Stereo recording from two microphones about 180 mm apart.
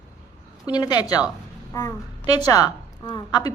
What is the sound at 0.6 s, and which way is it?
A woman's voice, 25° left (ahead or behind).